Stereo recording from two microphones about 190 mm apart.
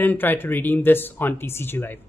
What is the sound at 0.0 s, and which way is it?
Speech, 10° left (ahead or behind).